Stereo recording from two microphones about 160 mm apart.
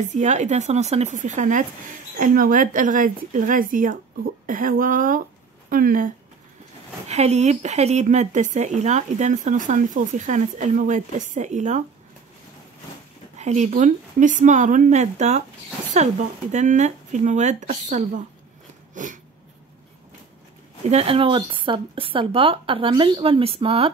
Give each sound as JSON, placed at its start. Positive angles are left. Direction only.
{"t": 0.1, "sound": "speech", "side_deg": -45}
{"t": 7.1, "sound": "speech", "side_deg": -45}
{"t": 13.4, "sound": "speech", "side_deg": -45}
{"t": 20.9, "sound": "speech", "side_deg": -35}